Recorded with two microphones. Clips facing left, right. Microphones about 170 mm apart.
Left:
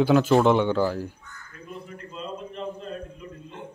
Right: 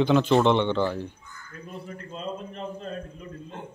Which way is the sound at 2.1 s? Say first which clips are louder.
Right 1 dB; 40° right (ahead or behind).